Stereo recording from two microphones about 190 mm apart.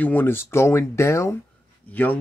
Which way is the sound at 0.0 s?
10° left (ahead or behind).